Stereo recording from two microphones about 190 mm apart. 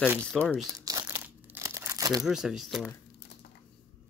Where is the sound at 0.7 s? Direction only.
20° right (ahead or behind).